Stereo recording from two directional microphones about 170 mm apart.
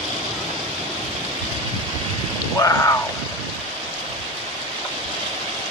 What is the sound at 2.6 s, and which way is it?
Speech, 20° left (ahead or behind).